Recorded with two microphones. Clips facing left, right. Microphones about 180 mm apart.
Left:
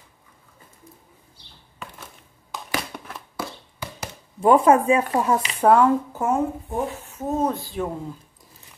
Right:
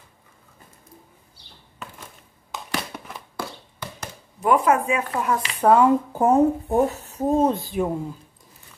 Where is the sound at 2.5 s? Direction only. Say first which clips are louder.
Even; 5° right (ahead or behind).